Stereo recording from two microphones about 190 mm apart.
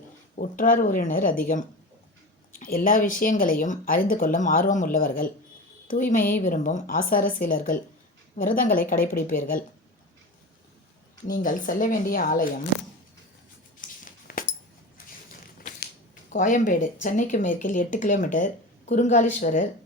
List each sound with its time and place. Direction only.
0.3 s speech: 45° left (ahead or behind)
11.3 s speech: 45° left (ahead or behind)
14.0 s a sound: 45° left (ahead or behind)
16.3 s speech: 45° left (ahead or behind)